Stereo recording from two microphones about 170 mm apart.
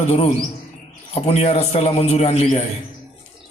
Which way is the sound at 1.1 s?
40° left (ahead or behind).